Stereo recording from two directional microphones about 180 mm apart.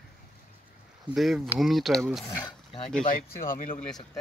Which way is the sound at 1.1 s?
Centre (ahead or behind).